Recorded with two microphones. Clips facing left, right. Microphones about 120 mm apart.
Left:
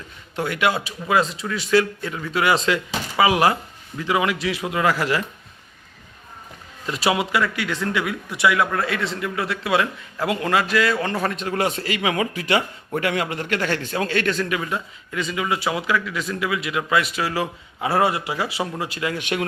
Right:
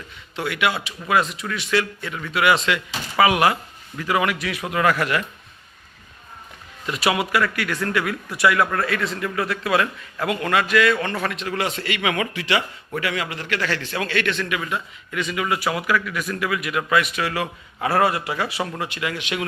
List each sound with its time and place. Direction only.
0.3 s a man's voice: 40° left (ahead or behind)
6.8 s a man's voice: 25° left (ahead or behind)
11.3 s speech: 40° left (ahead or behind)
12.3 s a man's voice: 40° left (ahead or behind)
19.1 s speech: 40° left (ahead or behind)